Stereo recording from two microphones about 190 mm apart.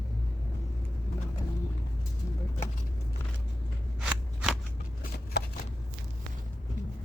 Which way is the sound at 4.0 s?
5° right (ahead or behind).